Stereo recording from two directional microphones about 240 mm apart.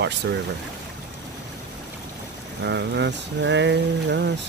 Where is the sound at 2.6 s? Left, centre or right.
Right.